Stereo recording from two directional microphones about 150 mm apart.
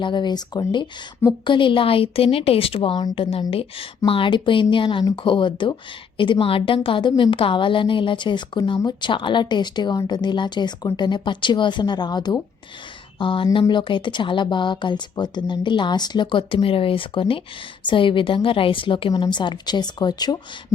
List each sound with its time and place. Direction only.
0.0 s a woman's voice: 30° left (ahead or behind)